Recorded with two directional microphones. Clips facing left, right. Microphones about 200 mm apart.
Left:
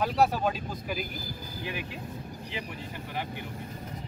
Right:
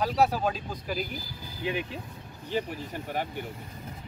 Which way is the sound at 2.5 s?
45° right (ahead or behind).